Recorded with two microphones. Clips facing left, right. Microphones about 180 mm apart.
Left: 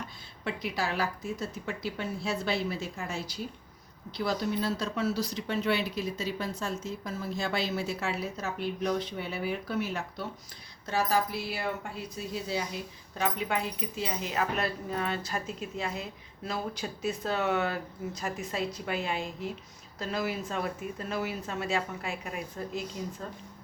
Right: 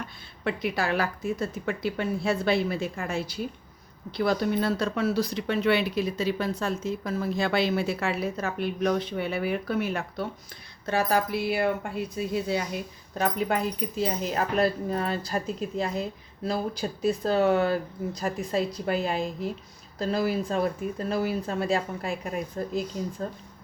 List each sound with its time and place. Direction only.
0.4 s speech: 60° right (ahead or behind)
13.1 s speech: 40° right (ahead or behind)